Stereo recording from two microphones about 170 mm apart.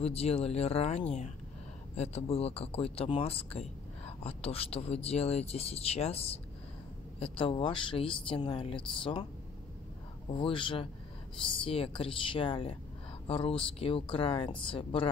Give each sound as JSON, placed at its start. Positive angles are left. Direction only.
{"t": 0.0, "sound": "speech", "side_deg": 35}
{"t": 10.3, "sound": "speech", "side_deg": 30}